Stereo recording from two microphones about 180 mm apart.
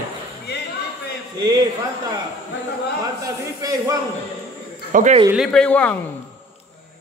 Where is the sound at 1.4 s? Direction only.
20° right (ahead or behind).